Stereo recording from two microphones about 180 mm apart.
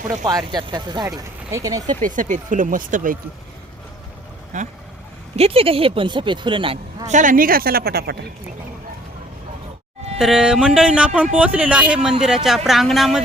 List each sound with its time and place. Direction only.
0.1 s speech: 20° right (ahead or behind)
2.0 s speech: 45° right (ahead or behind)
4.5 s speech: 45° right (ahead or behind)
5.4 s speech: 30° right (ahead or behind)
7.1 s a woman's voice: 45° right (ahead or behind)
10.2 s music: 5° right (ahead or behind)
11.3 s speech: 5° right (ahead or behind)
12.2 s music: 5° right (ahead or behind)